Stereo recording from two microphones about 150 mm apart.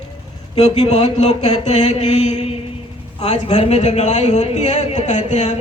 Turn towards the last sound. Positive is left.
turn(degrees=50)  # may be behind; listen again after turning